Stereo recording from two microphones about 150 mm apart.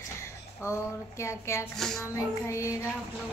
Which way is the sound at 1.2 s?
20° left (ahead or behind).